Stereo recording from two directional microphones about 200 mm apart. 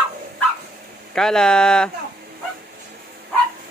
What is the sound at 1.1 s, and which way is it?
Speech, 5° left (ahead or behind).